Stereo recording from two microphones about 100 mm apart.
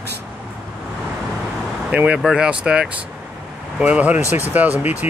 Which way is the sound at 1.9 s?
10° right (ahead or behind).